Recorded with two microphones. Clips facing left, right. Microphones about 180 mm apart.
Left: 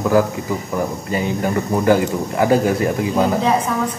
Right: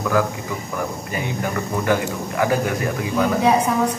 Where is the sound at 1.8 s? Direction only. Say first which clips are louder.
Left 6 dB; 25° left (ahead or behind).